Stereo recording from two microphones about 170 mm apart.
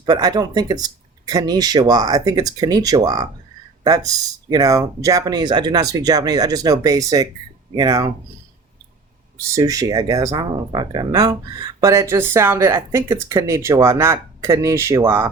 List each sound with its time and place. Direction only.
0.0 s speech: 25° right (ahead or behind)
9.6 s speech: 20° right (ahead or behind)